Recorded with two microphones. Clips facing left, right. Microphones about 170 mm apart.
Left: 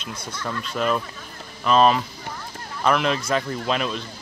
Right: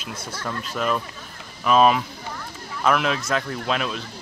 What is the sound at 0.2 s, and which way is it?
Speech, 30° right (ahead or behind).